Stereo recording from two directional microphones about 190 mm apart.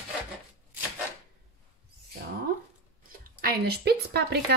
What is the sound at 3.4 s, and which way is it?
A woman's voice, 55° right (ahead or behind).